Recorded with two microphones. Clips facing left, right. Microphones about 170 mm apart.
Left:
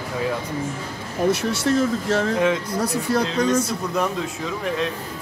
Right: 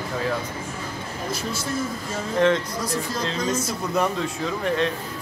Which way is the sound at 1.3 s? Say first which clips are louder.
Left 9 dB; 75° left (ahead or behind).